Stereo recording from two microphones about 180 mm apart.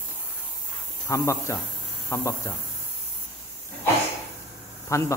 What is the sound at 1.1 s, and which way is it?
Speech, 15° left (ahead or behind).